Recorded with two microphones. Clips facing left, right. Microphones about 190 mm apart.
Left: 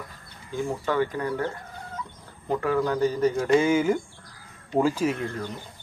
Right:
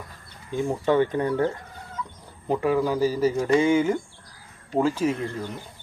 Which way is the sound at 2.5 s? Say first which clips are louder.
Right 2 dB; 15° right (ahead or behind).